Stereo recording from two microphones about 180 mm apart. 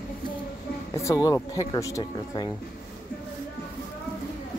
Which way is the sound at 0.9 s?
15° left (ahead or behind).